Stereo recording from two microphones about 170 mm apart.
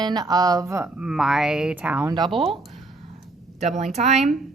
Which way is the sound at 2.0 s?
25° right (ahead or behind).